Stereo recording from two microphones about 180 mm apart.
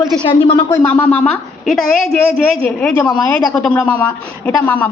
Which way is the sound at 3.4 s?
20° left (ahead or behind).